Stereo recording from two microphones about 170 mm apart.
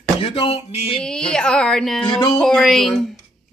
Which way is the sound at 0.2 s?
35° left (ahead or behind).